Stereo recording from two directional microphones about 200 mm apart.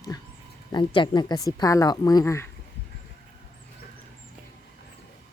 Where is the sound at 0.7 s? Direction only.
25° left (ahead or behind).